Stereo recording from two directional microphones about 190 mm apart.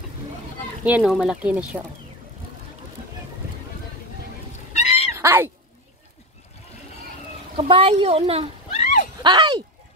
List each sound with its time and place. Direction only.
0.8 s speech: 5° right (ahead or behind)
4.7 s a sound: 35° left (ahead or behind)
5.2 s speech: 10° right (ahead or behind)
7.5 s speech: 30° right (ahead or behind)
8.7 s a sound: 40° left (ahead or behind)
9.2 s speech: 20° right (ahead or behind)